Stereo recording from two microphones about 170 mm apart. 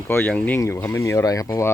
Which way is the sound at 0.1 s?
10° left (ahead or behind).